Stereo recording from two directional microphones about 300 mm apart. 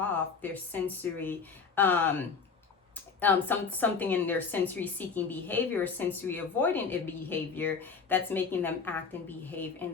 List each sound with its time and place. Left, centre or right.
0.0 s a woman's voice: centre